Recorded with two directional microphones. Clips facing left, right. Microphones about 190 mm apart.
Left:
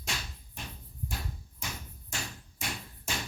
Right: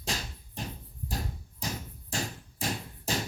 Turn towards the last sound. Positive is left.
turn(degrees=-35)  # may be behind; listen again after turning